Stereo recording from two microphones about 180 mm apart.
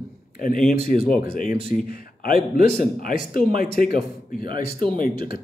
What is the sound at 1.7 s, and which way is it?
Speech, 55° left (ahead or behind).